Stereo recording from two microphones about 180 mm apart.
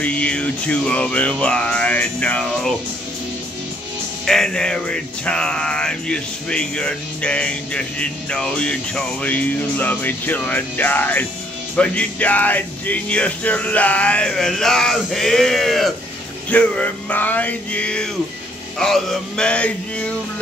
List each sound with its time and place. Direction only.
0.0 s speech: 5° left (ahead or behind)
4.3 s music: 5° left (ahead or behind)
11.7 s speech: 5° left (ahead or behind)
18.8 s music: centre (ahead or behind)